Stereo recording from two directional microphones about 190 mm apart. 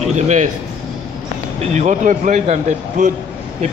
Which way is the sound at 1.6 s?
40° right (ahead or behind).